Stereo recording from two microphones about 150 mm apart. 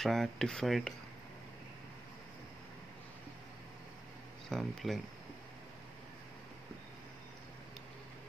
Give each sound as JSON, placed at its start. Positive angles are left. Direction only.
{"t": 0.0, "sound": "speech", "side_deg": 0}
{"t": 4.5, "sound": "speech", "side_deg": 0}